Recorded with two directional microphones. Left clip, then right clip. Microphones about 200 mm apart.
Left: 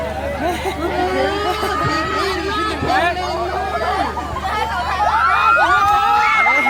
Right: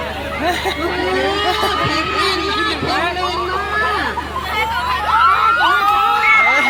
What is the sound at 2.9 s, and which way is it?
Speech, 5° right (ahead or behind).